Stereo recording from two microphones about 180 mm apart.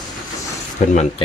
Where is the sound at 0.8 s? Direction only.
45° left (ahead or behind).